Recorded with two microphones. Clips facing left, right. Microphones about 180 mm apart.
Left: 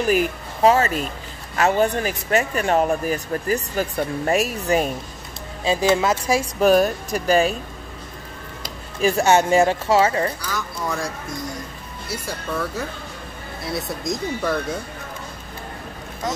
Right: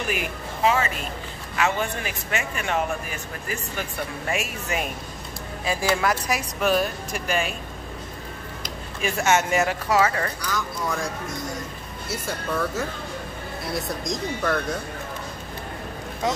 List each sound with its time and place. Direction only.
0.0 s speech: 40° left (ahead or behind)
5.6 s speech: 25° left (ahead or behind)
6.6 s speech: 40° left (ahead or behind)
9.0 s speech: 35° left (ahead or behind)
10.4 s speech: centre (ahead or behind)
12.1 s speech: centre (ahead or behind)